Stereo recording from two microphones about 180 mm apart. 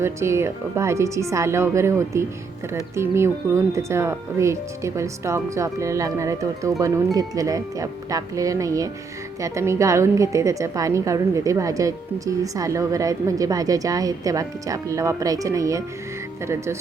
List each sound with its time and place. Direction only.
0.0 s a woman's voice: 15° right (ahead or behind)